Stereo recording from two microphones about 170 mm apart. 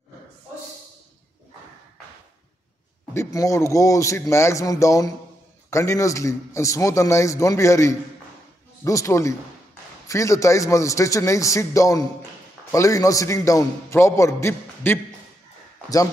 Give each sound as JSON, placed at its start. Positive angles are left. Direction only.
{"t": 3.2, "sound": "a man's voice", "side_deg": 20}